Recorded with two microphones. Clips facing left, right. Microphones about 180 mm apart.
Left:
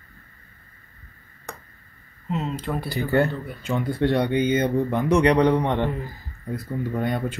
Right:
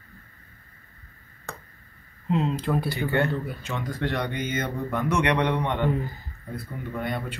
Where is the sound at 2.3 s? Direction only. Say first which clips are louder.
Right 3 dB; centre (ahead or behind).